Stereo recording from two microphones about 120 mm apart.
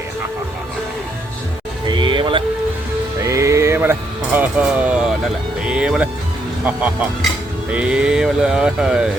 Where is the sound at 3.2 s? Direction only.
25° right (ahead or behind); by 6.1 s 10° right (ahead or behind).